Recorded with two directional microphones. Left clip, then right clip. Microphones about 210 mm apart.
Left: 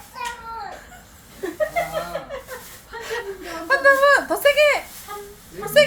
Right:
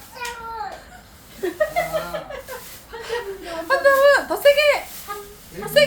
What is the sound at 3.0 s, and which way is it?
Whimper, 15° left (ahead or behind).